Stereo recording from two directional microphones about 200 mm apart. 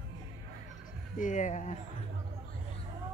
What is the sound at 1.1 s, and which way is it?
Speech, 40° left (ahead or behind).